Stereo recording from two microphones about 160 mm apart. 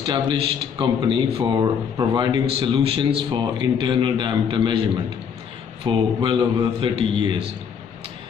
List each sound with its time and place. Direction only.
0.0 s a man's voice: 30° right (ahead or behind)